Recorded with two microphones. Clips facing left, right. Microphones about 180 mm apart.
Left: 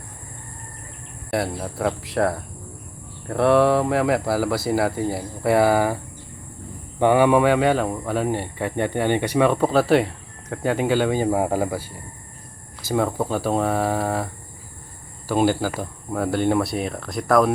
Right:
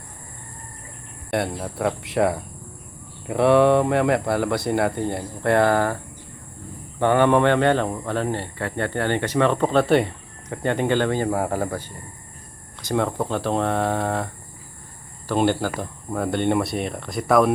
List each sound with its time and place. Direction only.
1.3 s speech: centre (ahead or behind)
7.0 s speech: 10° left (ahead or behind)
15.3 s speech: 5° left (ahead or behind)